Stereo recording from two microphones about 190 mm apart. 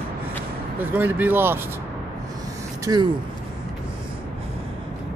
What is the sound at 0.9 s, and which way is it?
Speech, 10° right (ahead or behind).